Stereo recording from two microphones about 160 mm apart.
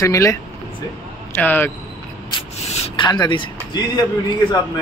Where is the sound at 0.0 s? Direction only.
20° left (ahead or behind).